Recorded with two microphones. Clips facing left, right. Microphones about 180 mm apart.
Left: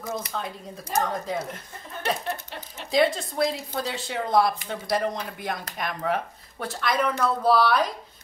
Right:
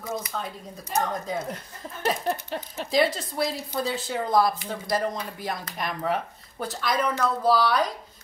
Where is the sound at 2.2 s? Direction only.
40° right (ahead or behind).